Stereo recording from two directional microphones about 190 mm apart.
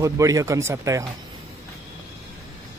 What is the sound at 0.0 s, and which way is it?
A man's voice, 15° right (ahead or behind).